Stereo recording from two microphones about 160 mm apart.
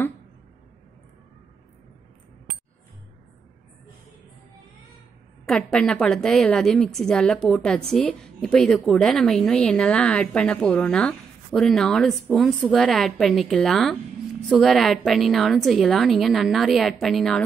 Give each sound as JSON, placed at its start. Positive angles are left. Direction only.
{"t": 5.4, "sound": "a woman's voice", "side_deg": 5}